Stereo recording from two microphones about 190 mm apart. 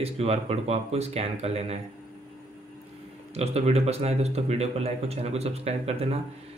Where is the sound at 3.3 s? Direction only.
35° right (ahead or behind).